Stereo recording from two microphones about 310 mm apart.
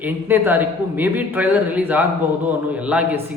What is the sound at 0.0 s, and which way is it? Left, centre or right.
A man's voice, centre.